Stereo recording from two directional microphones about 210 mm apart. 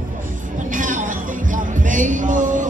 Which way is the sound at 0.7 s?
40° right (ahead or behind).